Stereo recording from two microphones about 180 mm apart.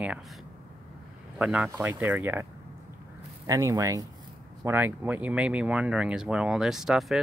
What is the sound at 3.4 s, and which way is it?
Speech, 20° right (ahead or behind).